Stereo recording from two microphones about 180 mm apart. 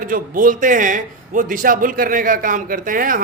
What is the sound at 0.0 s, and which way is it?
A man's voice, 50° right (ahead or behind).